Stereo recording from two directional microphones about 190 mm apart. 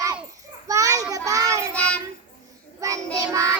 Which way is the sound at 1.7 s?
5° left (ahead or behind).